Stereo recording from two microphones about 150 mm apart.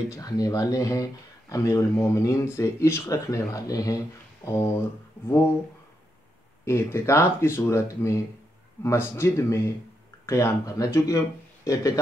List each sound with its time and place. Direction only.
0.1 s speech: 25° left (ahead or behind)
6.6 s speech: 20° left (ahead or behind)